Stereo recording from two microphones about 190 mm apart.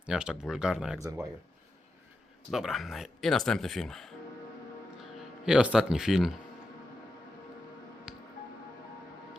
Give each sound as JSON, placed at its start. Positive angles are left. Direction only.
{"t": 0.0, "sound": "speech", "side_deg": -5}
{"t": 2.5, "sound": "speech", "side_deg": 0}
{"t": 5.1, "sound": "speech", "side_deg": -5}
{"t": 8.1, "sound": "music", "side_deg": -5}